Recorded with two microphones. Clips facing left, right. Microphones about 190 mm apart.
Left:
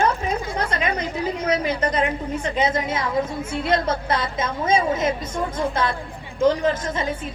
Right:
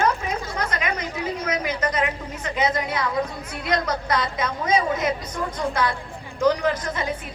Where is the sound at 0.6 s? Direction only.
30° left (ahead or behind).